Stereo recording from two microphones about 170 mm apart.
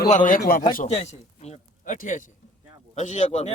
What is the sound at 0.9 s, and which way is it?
A man's voice, 40° left (ahead or behind).